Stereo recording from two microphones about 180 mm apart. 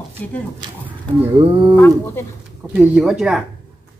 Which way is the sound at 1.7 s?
15° left (ahead or behind).